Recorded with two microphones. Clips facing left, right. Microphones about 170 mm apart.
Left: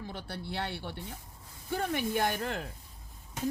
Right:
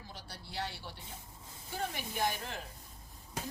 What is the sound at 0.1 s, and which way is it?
Speech, 60° left (ahead or behind).